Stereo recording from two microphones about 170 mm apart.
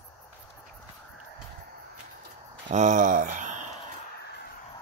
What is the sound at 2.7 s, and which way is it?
Speech, 45° right (ahead or behind).